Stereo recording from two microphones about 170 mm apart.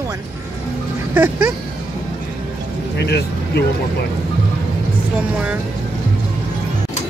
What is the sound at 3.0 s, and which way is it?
Speech, 75° left (ahead or behind).